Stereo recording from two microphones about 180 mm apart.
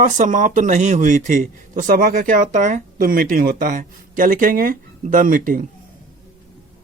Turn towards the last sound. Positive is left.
turn(degrees=-50)  # may be behind; listen again after turning